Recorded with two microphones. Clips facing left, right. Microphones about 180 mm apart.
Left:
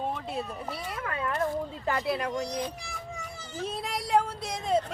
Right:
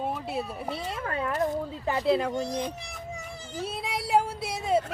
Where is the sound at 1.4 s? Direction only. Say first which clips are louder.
Right 2 dB; 20° right (ahead or behind).